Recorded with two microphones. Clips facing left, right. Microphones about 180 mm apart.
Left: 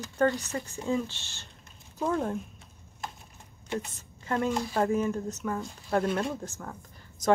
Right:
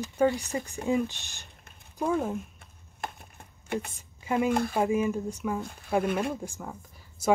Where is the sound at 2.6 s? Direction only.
55° right (ahead or behind).